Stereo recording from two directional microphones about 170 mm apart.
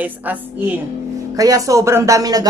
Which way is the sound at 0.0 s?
10° right (ahead or behind).